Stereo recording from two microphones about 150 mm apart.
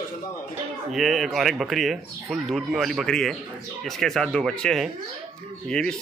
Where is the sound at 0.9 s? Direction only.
Centre (ahead or behind).